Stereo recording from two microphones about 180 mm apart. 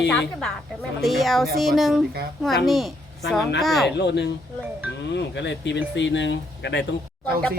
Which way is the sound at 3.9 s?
70° left (ahead or behind).